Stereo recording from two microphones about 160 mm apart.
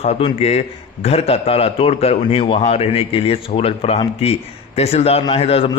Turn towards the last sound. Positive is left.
turn(degrees=40)  # may be behind; listen again after turning